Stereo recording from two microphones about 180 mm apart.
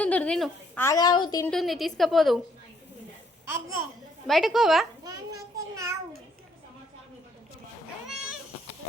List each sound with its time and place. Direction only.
0.0 s a woman's voice: 5° left (ahead or behind)
0.8 s a woman's voice: 20° left (ahead or behind)
1.5 s a woman's voice: centre (ahead or behind)
4.3 s a woman's voice: centre (ahead or behind)
5.0 s a child's voice: 20° right (ahead or behind)
8.0 s cat: centre (ahead or behind)